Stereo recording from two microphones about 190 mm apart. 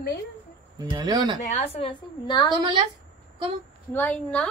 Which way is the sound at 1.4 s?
35° left (ahead or behind).